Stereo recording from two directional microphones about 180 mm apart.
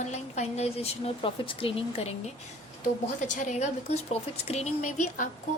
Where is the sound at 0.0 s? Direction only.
40° left (ahead or behind).